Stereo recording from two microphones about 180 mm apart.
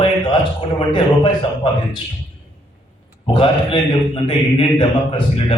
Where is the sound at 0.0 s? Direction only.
25° left (ahead or behind).